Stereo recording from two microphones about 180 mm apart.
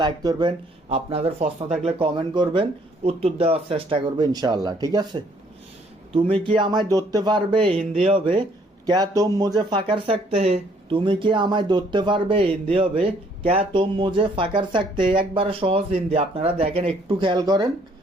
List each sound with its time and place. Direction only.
0.0 s speech: 20° right (ahead or behind)